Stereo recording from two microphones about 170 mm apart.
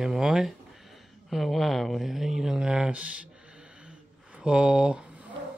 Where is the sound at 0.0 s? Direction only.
5° right (ahead or behind).